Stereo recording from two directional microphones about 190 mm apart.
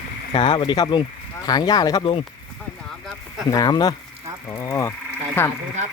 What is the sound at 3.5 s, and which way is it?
Speech, 20° left (ahead or behind).